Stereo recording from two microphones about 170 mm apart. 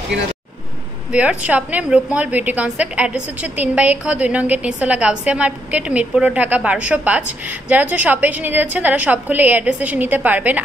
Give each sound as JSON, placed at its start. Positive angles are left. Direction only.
{"t": 1.1, "sound": "a woman's voice", "side_deg": -5}